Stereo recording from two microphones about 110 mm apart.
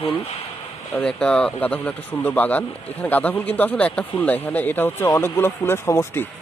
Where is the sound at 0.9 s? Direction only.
5° left (ahead or behind).